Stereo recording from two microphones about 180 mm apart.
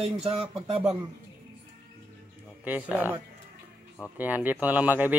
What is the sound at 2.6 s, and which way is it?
A man's voice, 10° right (ahead or behind).